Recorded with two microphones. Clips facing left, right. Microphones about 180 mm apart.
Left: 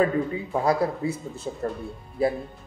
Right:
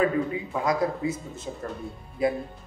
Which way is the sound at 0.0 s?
35° left (ahead or behind).